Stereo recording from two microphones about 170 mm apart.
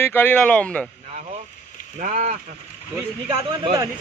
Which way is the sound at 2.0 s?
45° right (ahead or behind).